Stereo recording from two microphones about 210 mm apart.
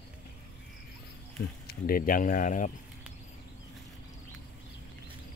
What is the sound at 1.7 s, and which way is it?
Speech, 45° left (ahead or behind).